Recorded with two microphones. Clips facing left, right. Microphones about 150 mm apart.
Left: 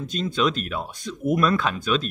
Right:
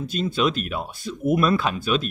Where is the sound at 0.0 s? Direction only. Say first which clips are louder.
Right 1 dB; 5° right (ahead or behind).